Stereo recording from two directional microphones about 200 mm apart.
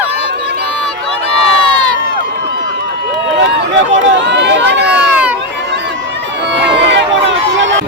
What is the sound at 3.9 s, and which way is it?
Run, 60° right (ahead or behind).